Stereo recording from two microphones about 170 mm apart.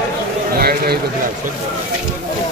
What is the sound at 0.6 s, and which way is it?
Speech, 65° right (ahead or behind).